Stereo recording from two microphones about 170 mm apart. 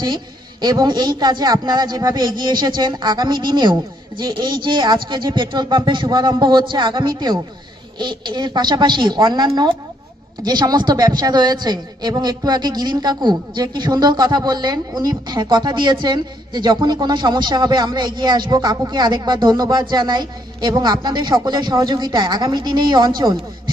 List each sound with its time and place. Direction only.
0.6 s a woman's voice: 25° right (ahead or behind)